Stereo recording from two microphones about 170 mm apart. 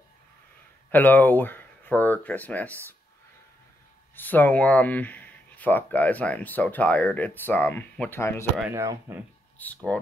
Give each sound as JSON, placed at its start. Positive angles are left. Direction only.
{"t": 0.9, "sound": "speech", "side_deg": 10}
{"t": 4.1, "sound": "speech", "side_deg": 10}
{"t": 8.7, "sound": "speech", "side_deg": -15}
{"t": 9.6, "sound": "speech", "side_deg": 10}